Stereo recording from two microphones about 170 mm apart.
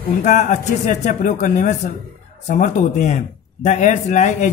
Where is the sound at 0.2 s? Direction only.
45° left (ahead or behind).